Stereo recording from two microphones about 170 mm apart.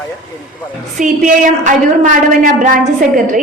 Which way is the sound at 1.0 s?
50° right (ahead or behind).